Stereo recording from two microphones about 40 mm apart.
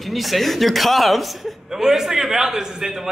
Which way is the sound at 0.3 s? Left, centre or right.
Centre.